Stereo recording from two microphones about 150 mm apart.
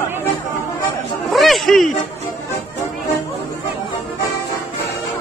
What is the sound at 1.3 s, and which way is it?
Zipper, centre (ahead or behind).